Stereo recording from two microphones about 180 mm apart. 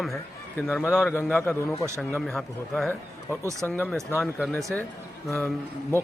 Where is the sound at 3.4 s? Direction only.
15° right (ahead or behind).